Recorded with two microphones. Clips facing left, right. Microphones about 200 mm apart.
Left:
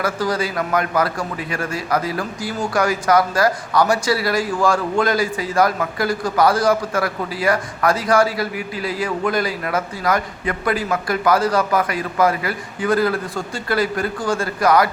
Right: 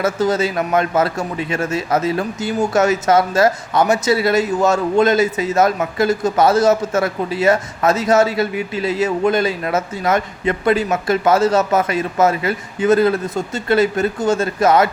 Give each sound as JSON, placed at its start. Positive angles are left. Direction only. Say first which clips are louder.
{"t": 0.0, "sound": "a man's voice", "louder": "right 4 dB", "side_deg": -25}